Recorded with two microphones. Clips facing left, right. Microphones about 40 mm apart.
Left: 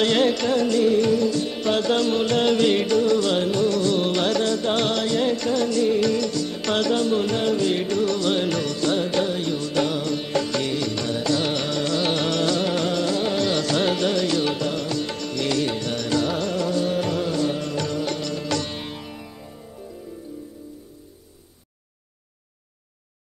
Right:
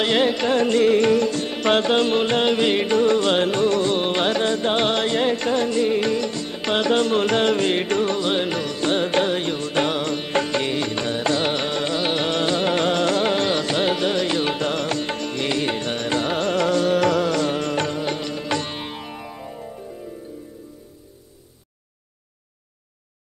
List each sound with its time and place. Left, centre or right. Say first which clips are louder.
0.0 s music: even; centre
0.5 s music: right 2 dB; right
1.9 s music: right 2 dB; right
3.0 s music: right 2 dB; right
6.9 s music: right 5 dB; right
8.1 s music: even; right
8.7 s music: right 4 dB; right
13.5 s music: right 1 dB; right
14.7 s music: right 2 dB; right
17.8 s music: right 1 dB; right
19.1 s music: right 5 dB; right